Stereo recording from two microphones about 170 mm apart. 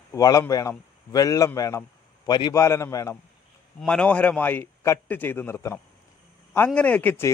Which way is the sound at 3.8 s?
5° left (ahead or behind).